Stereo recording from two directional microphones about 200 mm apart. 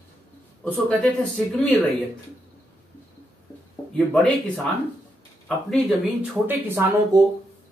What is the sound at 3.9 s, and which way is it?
Speech, 5° left (ahead or behind).